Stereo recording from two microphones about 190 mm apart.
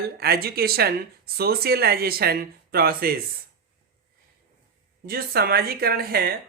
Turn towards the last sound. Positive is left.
turn(degrees=-55)  # may be behind; listen again after turning